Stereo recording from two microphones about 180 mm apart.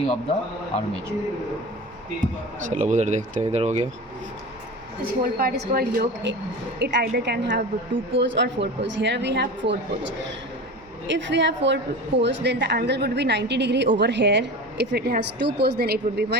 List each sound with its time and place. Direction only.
0.7 s speech: 35° left (ahead or behind)
2.6 s speech: 40° right (ahead or behind)
5.4 s a woman's voice: 55° right (ahead or behind)
6.7 s a woman's voice: 65° right (ahead or behind)
11.1 s a woman's voice: 80° right; by 16.4 s 65° right (ahead or behind)